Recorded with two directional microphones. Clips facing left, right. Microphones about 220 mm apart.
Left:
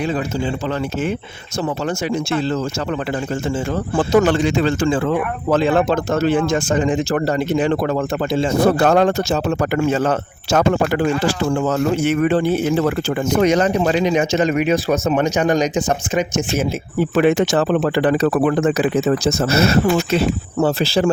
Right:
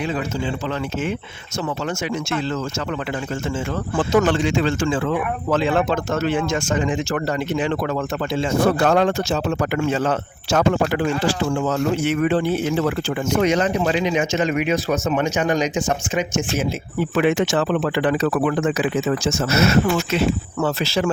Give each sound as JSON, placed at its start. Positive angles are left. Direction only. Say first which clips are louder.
{"t": 4.3, "sound": "speech", "louder": "left 3 dB", "side_deg": 40}